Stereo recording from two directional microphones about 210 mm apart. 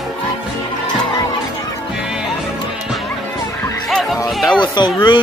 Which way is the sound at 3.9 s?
Centre (ahead or behind).